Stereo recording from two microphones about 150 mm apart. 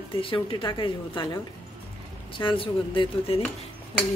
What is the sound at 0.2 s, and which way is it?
A woman's voice, 35° left (ahead or behind).